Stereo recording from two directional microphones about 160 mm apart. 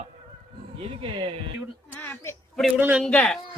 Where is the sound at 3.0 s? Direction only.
5° left (ahead or behind).